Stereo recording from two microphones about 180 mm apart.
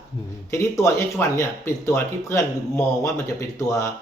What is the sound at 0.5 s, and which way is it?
Speech, 15° left (ahead or behind).